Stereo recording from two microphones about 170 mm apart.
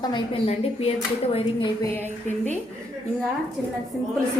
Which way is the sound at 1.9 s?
10° left (ahead or behind).